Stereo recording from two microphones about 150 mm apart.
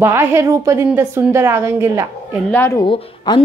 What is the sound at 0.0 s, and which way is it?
A woman's voice, 15° right (ahead or behind).